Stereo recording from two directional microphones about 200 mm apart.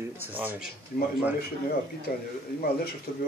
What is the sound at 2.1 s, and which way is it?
Speech, 45° left (ahead or behind).